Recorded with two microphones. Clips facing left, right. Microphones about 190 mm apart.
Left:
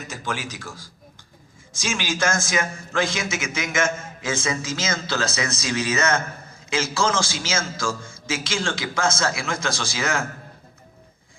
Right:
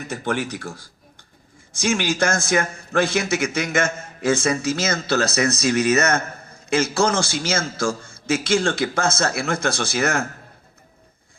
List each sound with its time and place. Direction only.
0.1 s a man's voice: 60° right (ahead or behind)